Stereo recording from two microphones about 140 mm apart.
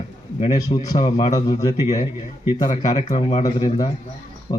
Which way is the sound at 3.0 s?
60° left (ahead or behind).